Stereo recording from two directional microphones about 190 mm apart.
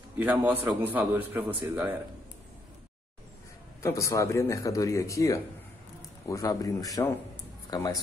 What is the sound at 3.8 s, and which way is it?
Speech, 15° left (ahead or behind).